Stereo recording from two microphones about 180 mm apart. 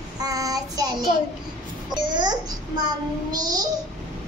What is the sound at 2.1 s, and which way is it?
Child singing, 25° right (ahead or behind).